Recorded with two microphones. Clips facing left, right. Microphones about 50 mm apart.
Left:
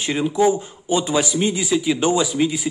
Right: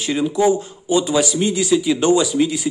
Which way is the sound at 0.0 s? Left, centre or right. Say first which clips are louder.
Right 1 dB; centre.